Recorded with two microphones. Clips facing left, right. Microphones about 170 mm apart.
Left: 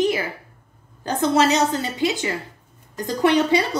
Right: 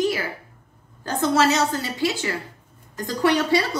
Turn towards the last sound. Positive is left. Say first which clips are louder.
# left 2 dB
turn(degrees=15)  # may be behind; listen again after turning